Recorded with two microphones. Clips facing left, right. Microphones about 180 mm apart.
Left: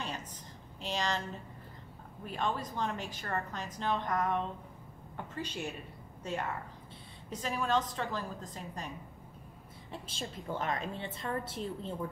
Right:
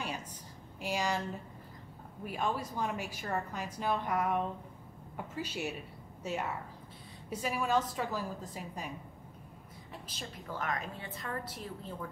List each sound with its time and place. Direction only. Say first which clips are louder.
0.7 s speech: right 1 dB; 10° right (ahead or behind)
2.2 s speech: even; 10° right (ahead or behind)
10.0 s a woman's voice: left 4 dB; 25° left (ahead or behind)